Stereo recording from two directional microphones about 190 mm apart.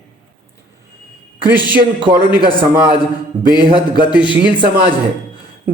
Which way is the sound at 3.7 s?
25° left (ahead or behind).